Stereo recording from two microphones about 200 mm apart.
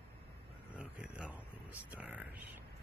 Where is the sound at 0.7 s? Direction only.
5° right (ahead or behind).